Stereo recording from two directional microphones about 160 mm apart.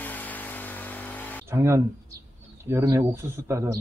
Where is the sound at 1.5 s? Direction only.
20° right (ahead or behind).